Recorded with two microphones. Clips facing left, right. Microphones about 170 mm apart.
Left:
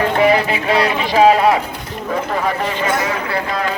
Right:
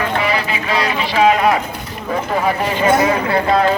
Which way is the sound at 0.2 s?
50° left (ahead or behind).